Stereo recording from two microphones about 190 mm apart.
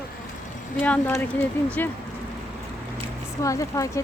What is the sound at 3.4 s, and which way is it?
Speech, 15° left (ahead or behind).